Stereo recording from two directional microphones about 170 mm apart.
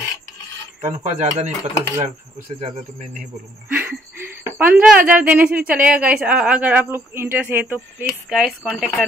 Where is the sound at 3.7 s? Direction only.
10° right (ahead or behind).